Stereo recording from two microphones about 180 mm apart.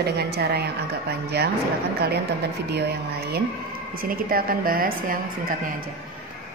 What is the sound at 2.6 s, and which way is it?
Speech, 65° right (ahead or behind).